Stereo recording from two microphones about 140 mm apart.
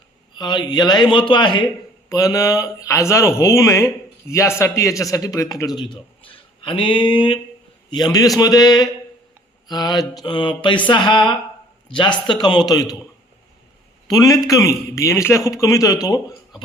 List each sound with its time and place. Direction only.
0.3 s a man's voice: 30° left (ahead or behind)
14.1 s speech: 25° left (ahead or behind)